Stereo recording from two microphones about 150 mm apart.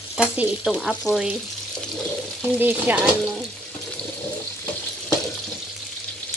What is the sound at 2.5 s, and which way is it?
Speech, 10° right (ahead or behind).